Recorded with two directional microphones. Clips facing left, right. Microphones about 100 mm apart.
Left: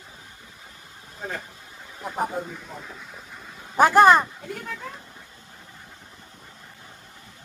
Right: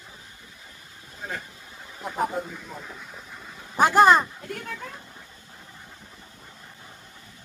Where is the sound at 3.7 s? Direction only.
40° left (ahead or behind).